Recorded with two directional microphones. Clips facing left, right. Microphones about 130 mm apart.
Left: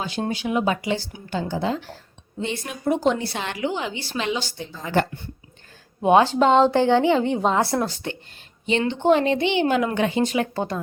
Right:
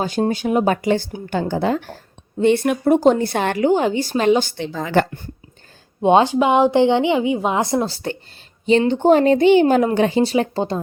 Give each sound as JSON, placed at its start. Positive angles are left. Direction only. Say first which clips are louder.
{"t": 0.0, "sound": "a woman's voice", "louder": "right 7 dB", "side_deg": -45}
{"t": 3.0, "sound": "a woman's voice", "louder": "right 7 dB", "side_deg": -45}
{"t": 4.5, "sound": "speech", "louder": "right 5 dB", "side_deg": -85}
{"t": 6.0, "sound": "speech", "louder": "right 2 dB", "side_deg": -25}
{"t": 6.3, "sound": "speech", "louder": "right 2 dB", "side_deg": -10}
{"t": 7.9, "sound": "speech", "louder": "right 5 dB", "side_deg": -35}